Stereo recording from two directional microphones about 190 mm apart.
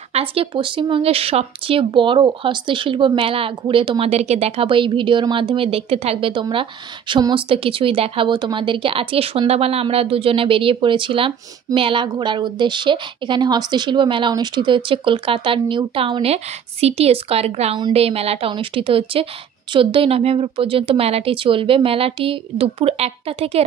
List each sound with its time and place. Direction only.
0.1 s a woman's voice: 30° right (ahead or behind)